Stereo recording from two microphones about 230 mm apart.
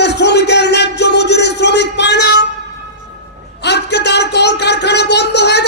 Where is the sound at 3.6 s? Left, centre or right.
Left.